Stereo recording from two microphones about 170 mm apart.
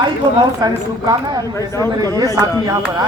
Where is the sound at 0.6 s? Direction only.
20° right (ahead or behind).